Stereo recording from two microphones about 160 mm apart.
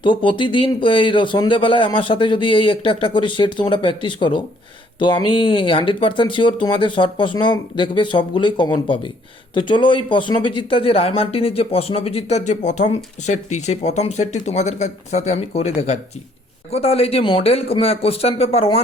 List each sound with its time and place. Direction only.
0.0 s speech: 30° left (ahead or behind)
16.7 s speech: 40° left (ahead or behind)